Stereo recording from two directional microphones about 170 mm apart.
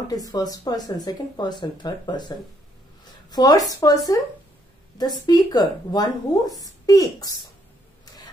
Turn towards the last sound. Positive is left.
turn(degrees=20)  # may be behind; listen again after turning